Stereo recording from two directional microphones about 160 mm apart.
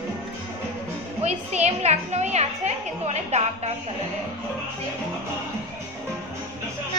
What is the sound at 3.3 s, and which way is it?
Speech, 45° right (ahead or behind).